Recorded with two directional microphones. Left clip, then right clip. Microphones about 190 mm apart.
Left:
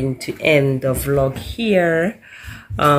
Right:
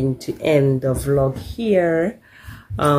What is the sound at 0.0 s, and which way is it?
Speech, 10° right (ahead or behind).